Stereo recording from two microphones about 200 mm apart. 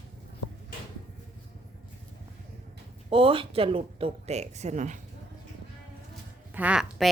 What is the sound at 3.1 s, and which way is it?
Speech, 25° right (ahead or behind).